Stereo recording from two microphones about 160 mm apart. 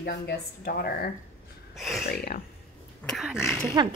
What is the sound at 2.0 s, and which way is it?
Speech, 75° left (ahead or behind).